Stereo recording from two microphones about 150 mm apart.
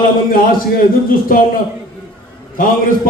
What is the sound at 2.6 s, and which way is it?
Speech, 70° left (ahead or behind).